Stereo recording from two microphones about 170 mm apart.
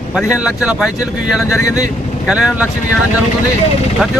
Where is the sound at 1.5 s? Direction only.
20° left (ahead or behind).